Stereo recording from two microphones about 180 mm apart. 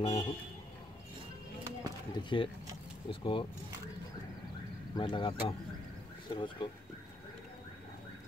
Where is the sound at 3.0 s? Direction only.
30° left (ahead or behind).